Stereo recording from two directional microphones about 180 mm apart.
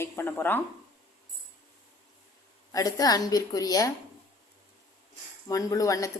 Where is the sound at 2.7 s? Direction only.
20° left (ahead or behind).